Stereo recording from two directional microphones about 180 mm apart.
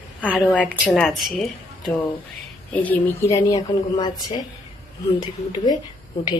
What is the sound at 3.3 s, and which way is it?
Speech, 20° left (ahead or behind).